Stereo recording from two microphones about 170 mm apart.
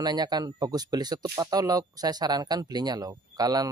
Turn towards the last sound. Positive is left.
turn(degrees=-20)  # may be behind; listen again after turning